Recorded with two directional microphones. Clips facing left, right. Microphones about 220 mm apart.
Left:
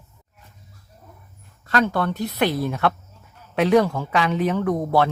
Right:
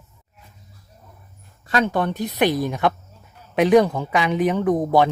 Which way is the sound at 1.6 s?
20° right (ahead or behind).